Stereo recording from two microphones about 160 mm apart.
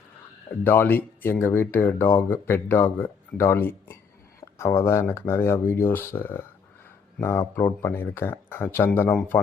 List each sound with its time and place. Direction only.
0.6 s speech: 10° left (ahead or behind)